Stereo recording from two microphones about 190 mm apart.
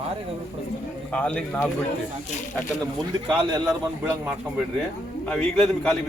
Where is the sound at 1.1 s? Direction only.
5° left (ahead or behind).